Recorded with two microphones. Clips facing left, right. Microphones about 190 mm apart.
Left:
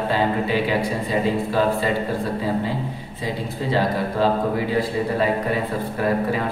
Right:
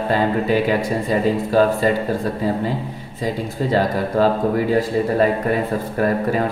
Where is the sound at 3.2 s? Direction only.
45° right (ahead or behind).